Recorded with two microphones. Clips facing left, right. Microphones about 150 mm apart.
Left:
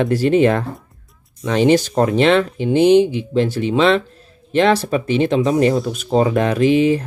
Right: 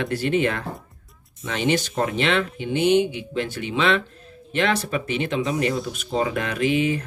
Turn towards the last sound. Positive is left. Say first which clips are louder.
# left 8 dB
turn(degrees=35)  # may be behind; listen again after turning